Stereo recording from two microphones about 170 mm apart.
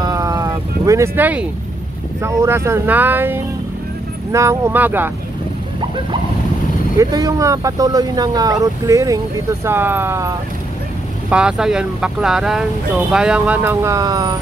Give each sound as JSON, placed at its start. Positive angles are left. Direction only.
{"t": 0.0, "sound": "a sound", "side_deg": -20}
{"t": 2.2, "sound": "speech", "side_deg": -15}
{"t": 7.0, "sound": "speech", "side_deg": -20}